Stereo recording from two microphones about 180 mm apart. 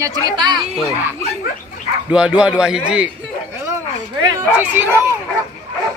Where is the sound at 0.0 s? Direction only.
20° right (ahead or behind).